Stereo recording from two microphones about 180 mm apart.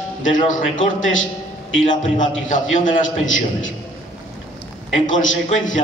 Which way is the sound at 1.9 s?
45° left (ahead or behind).